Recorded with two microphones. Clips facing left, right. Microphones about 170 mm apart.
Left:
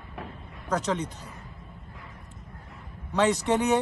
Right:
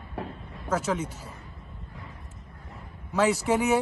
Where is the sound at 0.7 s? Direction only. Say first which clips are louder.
Even; 5° right (ahead or behind).